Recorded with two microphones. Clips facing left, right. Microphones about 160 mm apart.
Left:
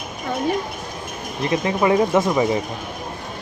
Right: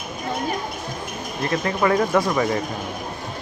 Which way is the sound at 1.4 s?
15° left (ahead or behind).